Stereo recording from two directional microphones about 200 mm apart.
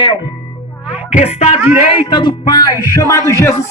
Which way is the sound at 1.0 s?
35° left (ahead or behind).